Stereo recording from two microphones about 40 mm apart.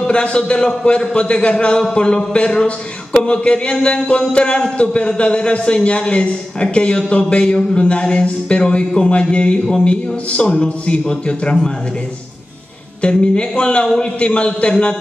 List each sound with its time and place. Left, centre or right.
0.0 s a man's voice: left
7.1 s a sound: left
7.7 s a man's voice: left
13.0 s a man's voice: left